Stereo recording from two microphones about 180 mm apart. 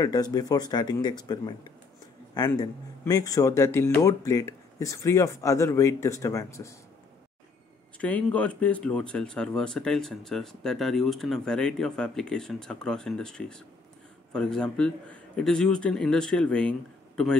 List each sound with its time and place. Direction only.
0.0 s speech: 20° left (ahead or behind)
8.0 s speech: 5° left (ahead or behind)